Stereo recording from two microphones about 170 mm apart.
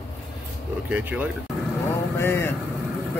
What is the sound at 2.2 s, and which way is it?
Speech, 15° left (ahead or behind).